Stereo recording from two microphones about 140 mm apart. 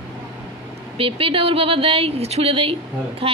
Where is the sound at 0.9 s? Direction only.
40° right (ahead or behind).